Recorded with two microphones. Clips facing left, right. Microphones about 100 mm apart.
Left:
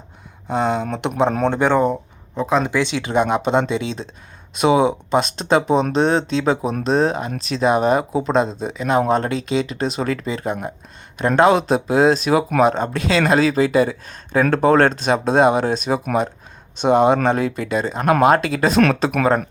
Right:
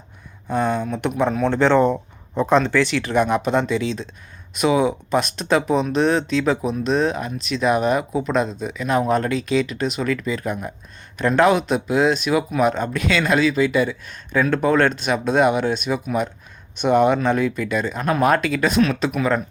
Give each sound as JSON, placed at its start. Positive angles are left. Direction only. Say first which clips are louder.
{"t": 0.4, "sound": "speech", "louder": "left 1 dB", "side_deg": 20}
{"t": 0.8, "sound": "speech", "louder": "left 1 dB", "side_deg": 65}
{"t": 1.0, "sound": "speech", "louder": "left 2 dB", "side_deg": 25}
{"t": 1.5, "sound": "speech", "louder": "right 4 dB", "side_deg": 15}
{"t": 2.6, "sound": "speech", "louder": "right 1 dB", "side_deg": 15}